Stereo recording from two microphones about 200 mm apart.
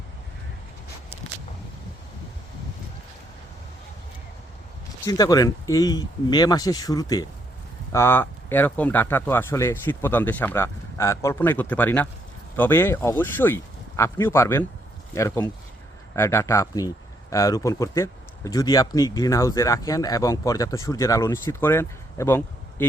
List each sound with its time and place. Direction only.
5.0 s speech: 15° left (ahead or behind)